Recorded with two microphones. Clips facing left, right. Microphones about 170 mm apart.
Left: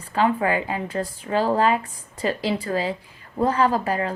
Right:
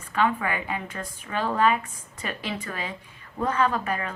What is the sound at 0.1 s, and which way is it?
Speech, 35° left (ahead or behind).